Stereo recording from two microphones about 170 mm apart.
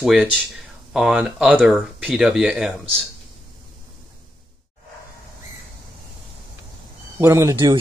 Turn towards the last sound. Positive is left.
turn(degrees=-15)  # may be behind; listen again after turning